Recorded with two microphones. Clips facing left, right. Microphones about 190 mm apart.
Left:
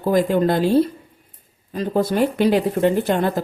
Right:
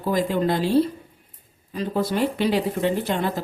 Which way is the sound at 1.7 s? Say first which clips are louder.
Left 4 dB; 50° left (ahead or behind).